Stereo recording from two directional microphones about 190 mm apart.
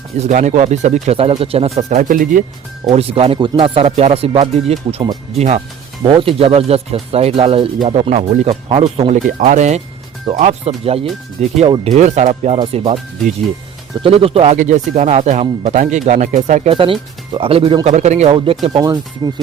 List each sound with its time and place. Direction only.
0.2 s speech: 40° right (ahead or behind)
2.9 s speech: 30° right (ahead or behind)
16.7 s speech: 25° right (ahead or behind)
18.6 s speech: 25° right (ahead or behind)